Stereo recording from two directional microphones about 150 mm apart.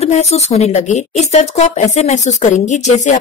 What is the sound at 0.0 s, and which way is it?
Speech, 45° left (ahead or behind).